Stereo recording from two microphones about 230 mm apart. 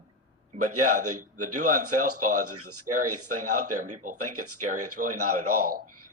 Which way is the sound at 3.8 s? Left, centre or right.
Right.